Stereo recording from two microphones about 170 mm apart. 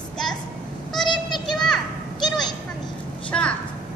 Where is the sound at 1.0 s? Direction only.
25° left (ahead or behind).